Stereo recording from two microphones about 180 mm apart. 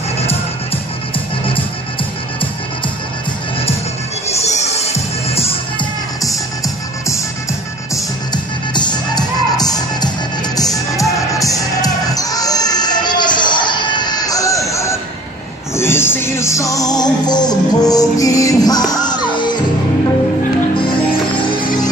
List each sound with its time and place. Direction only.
1.1 s music: 30° left (ahead or behind)
4.3 s music: 35° left (ahead or behind)
6.2 s music: 20° left (ahead or behind)